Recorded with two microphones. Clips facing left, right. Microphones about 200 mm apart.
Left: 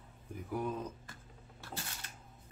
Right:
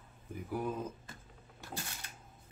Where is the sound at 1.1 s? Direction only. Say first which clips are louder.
Right 1 dB; 15° right (ahead or behind).